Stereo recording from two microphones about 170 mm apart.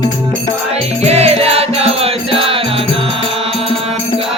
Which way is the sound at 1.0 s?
40° right (ahead or behind).